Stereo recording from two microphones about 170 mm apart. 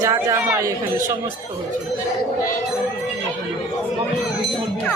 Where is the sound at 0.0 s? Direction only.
20° right (ahead or behind).